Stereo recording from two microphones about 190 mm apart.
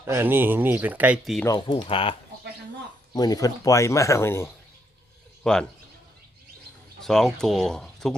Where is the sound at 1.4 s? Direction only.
20° left (ahead or behind).